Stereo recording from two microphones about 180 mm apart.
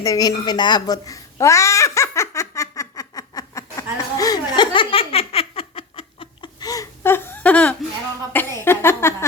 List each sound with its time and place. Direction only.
0.0 s babbling: 20° left (ahead or behind)
8.6 s speech: 15° left (ahead or behind)